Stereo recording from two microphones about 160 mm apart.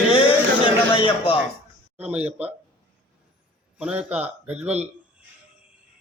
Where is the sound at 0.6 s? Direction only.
30° left (ahead or behind).